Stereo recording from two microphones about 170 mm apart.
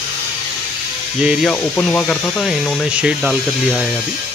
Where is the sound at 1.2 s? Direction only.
5° right (ahead or behind).